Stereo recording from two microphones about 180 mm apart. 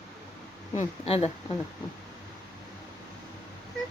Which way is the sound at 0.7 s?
35° left (ahead or behind).